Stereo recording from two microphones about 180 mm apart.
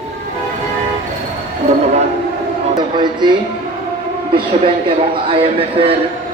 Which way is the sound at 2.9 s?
25° right (ahead or behind).